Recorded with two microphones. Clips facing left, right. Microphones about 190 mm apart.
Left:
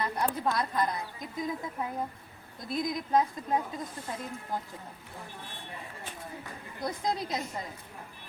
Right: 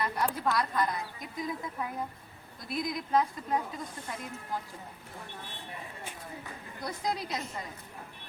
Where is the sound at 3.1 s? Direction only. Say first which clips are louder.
Left 1 dB; 20° left (ahead or behind).